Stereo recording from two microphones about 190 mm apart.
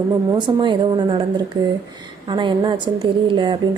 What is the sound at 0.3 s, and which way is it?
A woman's voice, 25° right (ahead or behind).